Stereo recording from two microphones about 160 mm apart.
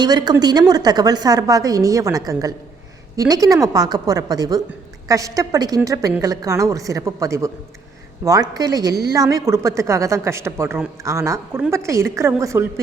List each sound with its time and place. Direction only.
0.0 s a woman's voice: 25° right (ahead or behind)